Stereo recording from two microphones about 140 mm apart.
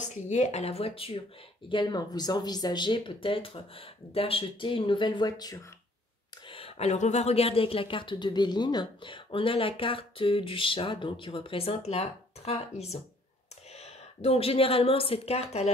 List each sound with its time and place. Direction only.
0.0 s speech: 60° left (ahead or behind)
1.7 s a woman's voice: 35° left (ahead or behind)
6.5 s a woman's voice: 45° left (ahead or behind)